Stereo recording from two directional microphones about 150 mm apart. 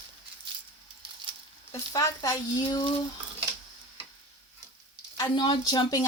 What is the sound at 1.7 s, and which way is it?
Speech, 25° left (ahead or behind).